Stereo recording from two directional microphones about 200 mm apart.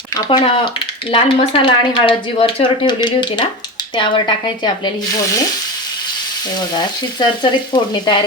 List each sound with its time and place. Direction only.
0.1 s speech: 25° left (ahead or behind)
6.7 s speech: 20° left (ahead or behind)